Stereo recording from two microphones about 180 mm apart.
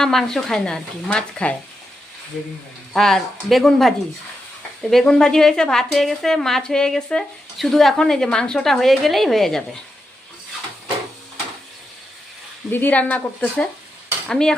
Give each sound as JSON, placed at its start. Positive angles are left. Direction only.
{"t": 0.0, "sound": "a woman's voice", "side_deg": 0}
{"t": 2.9, "sound": "a woman's voice", "side_deg": 0}
{"t": 12.7, "sound": "a woman's voice", "side_deg": 10}